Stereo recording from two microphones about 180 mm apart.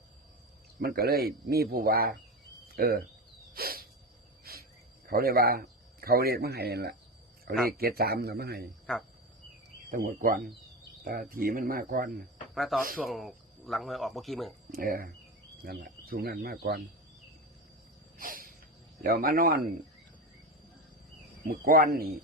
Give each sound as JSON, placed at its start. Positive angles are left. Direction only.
{"t": 0.8, "sound": "speech", "side_deg": -55}
{"t": 3.5, "sound": "a sound", "side_deg": -55}
{"t": 4.5, "sound": "cricket", "side_deg": -60}
{"t": 5.0, "sound": "speech", "side_deg": -55}
{"t": 9.9, "sound": "speech", "side_deg": -50}
{"t": 12.5, "sound": "speech", "side_deg": 0}
{"t": 14.7, "sound": "speech", "side_deg": -50}
{"t": 18.2, "sound": "a sound", "side_deg": -50}
{"t": 19.0, "sound": "speech", "side_deg": -55}
{"t": 21.4, "sound": "speech", "side_deg": -55}